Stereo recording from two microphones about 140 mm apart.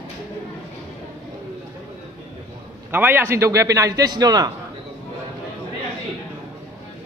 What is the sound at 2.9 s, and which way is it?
A man's voice, 15° right (ahead or behind).